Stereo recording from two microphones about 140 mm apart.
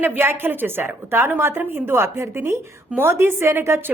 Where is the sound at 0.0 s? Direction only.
15° right (ahead or behind).